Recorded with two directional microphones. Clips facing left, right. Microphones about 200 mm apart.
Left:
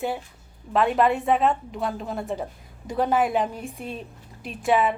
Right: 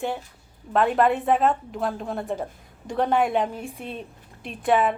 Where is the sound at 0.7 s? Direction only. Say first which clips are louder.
Even; centre (ahead or behind).